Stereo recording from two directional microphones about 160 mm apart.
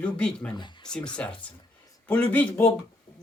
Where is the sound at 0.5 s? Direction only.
30° left (ahead or behind).